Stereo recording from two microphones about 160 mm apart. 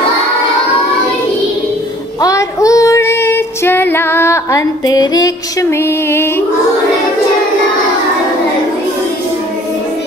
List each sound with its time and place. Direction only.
2.2 s female singing: 20° left (ahead or behind)